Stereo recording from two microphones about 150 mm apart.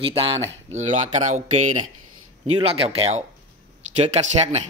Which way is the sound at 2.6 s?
40° right (ahead or behind).